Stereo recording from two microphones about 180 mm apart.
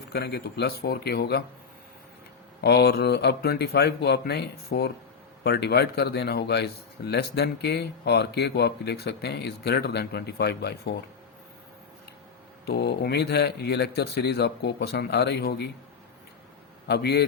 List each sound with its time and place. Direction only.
0.1 s a man's voice: 65° left (ahead or behind)
2.6 s a man's voice: 65° left (ahead or behind)
12.6 s a man's voice: 65° left (ahead or behind)
16.9 s a man's voice: 60° left (ahead or behind)